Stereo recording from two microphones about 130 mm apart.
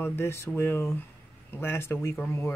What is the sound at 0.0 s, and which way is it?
Speech, 20° left (ahead or behind).